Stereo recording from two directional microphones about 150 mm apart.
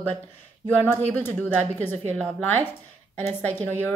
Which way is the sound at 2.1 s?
10° left (ahead or behind).